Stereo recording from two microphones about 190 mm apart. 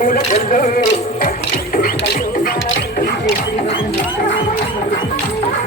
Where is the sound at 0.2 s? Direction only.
30° left (ahead or behind).